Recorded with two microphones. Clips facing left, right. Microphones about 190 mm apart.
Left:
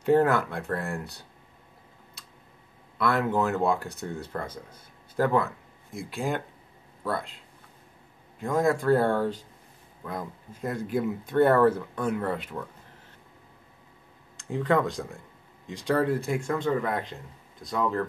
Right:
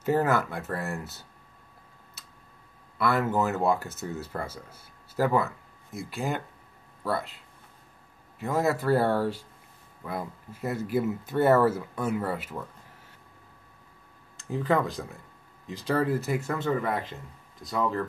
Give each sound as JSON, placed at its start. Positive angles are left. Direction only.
{"t": 0.0, "sound": "speech", "side_deg": 0}
{"t": 3.0, "sound": "speech", "side_deg": 0}
{"t": 14.3, "sound": "speech", "side_deg": 0}